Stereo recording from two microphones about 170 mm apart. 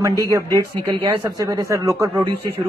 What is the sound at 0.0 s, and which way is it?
A man's voice, 20° right (ahead or behind).